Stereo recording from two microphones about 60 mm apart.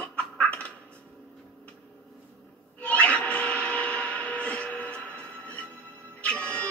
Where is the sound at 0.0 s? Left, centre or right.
Left.